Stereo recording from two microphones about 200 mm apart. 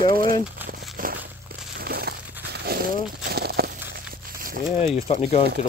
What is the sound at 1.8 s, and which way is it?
Crumpling, 50° right (ahead or behind).